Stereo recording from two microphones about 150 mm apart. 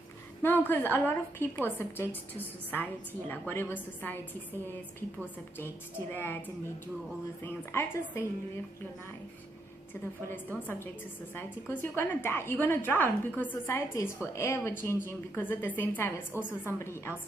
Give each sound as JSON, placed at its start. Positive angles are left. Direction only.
{"t": 0.4, "sound": "a woman's voice", "side_deg": 15}
{"t": 3.2, "sound": "a woman's voice", "side_deg": 15}
{"t": 6.1, "sound": "a woman's voice", "side_deg": 15}
{"t": 7.4, "sound": "a woman's voice", "side_deg": 15}
{"t": 10.3, "sound": "a woman's voice", "side_deg": 15}